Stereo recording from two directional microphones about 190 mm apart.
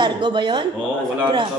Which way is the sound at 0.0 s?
25° right (ahead or behind).